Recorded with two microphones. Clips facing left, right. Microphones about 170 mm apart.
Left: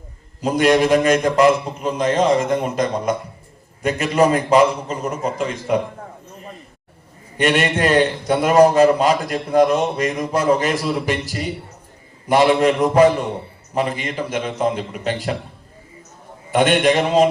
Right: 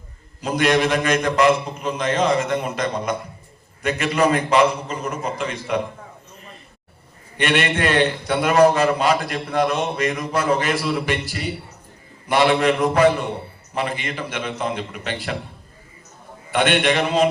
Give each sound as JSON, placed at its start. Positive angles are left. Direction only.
{"t": 0.4, "sound": "a man's voice", "side_deg": 40}
{"t": 7.3, "sound": "a man's voice", "side_deg": 40}
{"t": 16.5, "sound": "a man's voice", "side_deg": 40}